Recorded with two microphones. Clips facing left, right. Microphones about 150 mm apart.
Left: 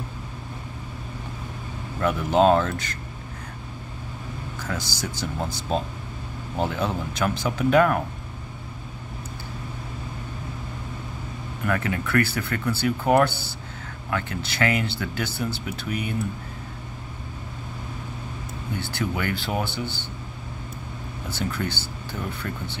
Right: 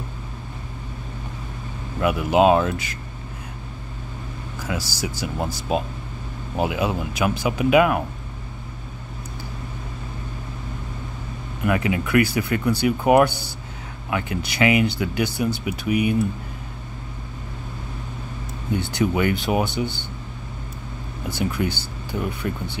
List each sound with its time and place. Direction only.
2.0 s speech: 10° right (ahead or behind)
4.6 s speech: 10° right (ahead or behind)
11.6 s speech: 15° right (ahead or behind)
18.8 s speech: 20° right (ahead or behind)
21.3 s speech: 15° right (ahead or behind)